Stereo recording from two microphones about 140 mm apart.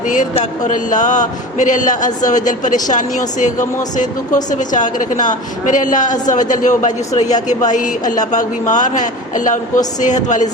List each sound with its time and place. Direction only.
0.1 s a man's voice: 65° left (ahead or behind)